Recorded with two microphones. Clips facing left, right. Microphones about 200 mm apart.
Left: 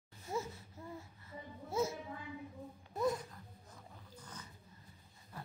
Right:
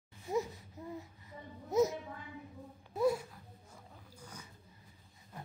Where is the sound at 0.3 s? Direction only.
15° right (ahead or behind).